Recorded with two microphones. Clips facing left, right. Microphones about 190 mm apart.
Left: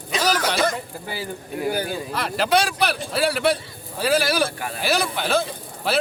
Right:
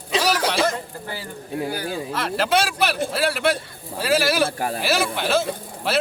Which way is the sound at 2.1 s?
Centre (ahead or behind).